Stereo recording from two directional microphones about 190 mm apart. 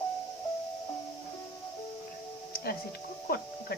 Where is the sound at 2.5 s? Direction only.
55° left (ahead or behind).